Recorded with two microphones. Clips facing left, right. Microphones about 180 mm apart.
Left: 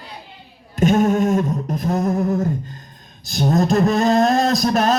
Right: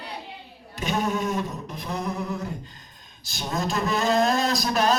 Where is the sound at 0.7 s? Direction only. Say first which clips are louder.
Left 10 dB; 45° left (ahead or behind).